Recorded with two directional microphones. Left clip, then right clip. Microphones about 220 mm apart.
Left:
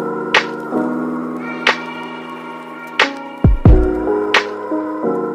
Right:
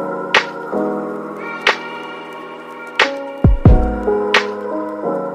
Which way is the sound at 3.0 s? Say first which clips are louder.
Even; centre (ahead or behind).